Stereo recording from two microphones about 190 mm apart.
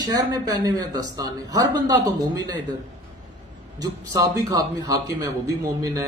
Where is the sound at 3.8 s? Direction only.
20° right (ahead or behind).